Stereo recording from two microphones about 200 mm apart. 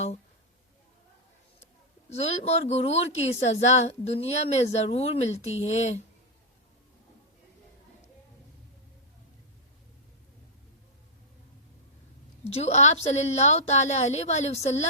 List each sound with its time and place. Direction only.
2.0 s a woman's voice: 35° left (ahead or behind)
12.5 s a woman's voice: 30° left (ahead or behind)